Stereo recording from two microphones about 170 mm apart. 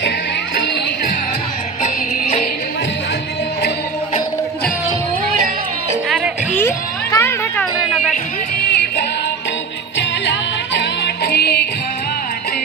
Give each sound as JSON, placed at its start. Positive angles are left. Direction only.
{"t": 1.8, "sound": "music", "side_deg": 45}
{"t": 6.0, "sound": "music", "side_deg": -5}
{"t": 6.5, "sound": "a sound", "side_deg": 15}
{"t": 10.2, "sound": "music", "side_deg": 85}